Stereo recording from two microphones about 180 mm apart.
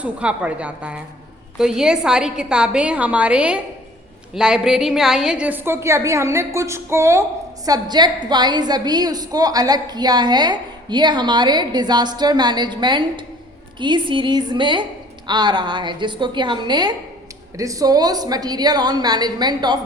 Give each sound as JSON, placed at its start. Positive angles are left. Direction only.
{"t": 0.0, "sound": "a woman's voice", "side_deg": -5}